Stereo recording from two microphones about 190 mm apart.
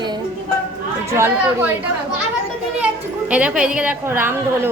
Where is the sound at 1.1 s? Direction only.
15° right (ahead or behind).